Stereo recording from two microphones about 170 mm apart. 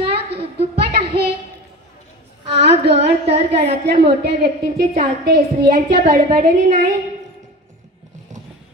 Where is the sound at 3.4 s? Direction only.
35° right (ahead or behind).